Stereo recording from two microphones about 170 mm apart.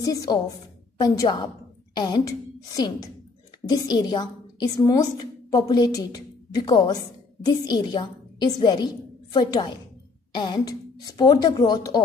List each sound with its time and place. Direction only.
0.0 s a woman's voice: 20° left (ahead or behind)